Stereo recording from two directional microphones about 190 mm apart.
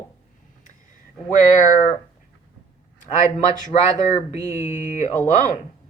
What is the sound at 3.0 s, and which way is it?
Speech, 40° left (ahead or behind).